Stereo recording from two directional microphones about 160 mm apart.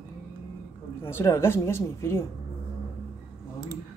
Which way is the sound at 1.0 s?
15° left (ahead or behind).